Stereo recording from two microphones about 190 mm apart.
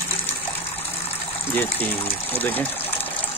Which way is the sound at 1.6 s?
10° left (ahead or behind).